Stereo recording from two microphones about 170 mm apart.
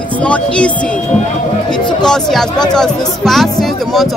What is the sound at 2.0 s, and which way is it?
Speech, 5° left (ahead or behind).